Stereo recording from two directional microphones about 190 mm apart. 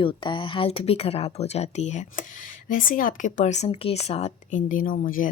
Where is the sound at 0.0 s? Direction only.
25° left (ahead or behind).